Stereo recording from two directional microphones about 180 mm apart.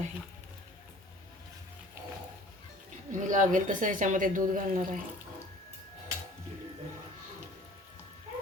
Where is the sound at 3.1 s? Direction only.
45° right (ahead or behind).